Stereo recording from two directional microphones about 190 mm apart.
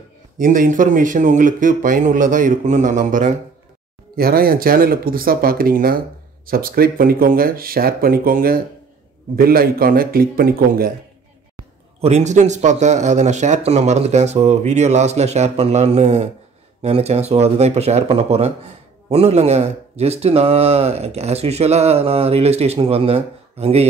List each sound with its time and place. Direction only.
0.4 s speech: 45° right (ahead or behind)
12.0 s speech: 35° right (ahead or behind)